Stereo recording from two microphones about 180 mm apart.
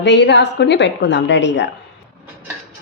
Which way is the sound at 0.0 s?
80° left.